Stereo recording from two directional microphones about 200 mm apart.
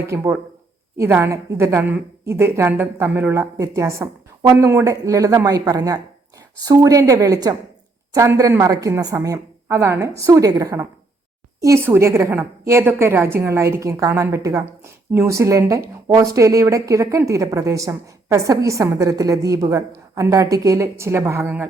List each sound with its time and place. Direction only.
0.1 s a woman's voice: 15° right (ahead or behind)